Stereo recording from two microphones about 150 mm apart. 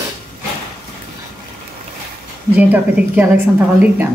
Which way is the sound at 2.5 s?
10° right (ahead or behind).